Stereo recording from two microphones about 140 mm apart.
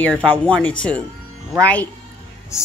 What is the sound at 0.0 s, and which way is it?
Speech, 10° left (ahead or behind).